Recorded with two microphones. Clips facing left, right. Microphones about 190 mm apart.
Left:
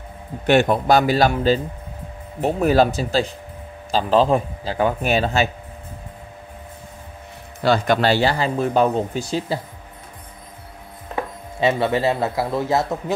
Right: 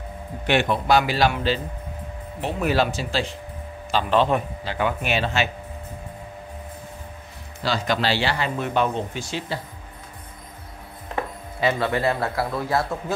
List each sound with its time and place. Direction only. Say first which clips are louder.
0.5 s a man's voice: left 4 dB; 45° left (ahead or behind)
7.6 s a man's voice: left 6 dB; 55° left (ahead or behind); by 9.6 s 40° left (ahead or behind)
11.6 s speech: left 3 dB; 20° left (ahead or behind)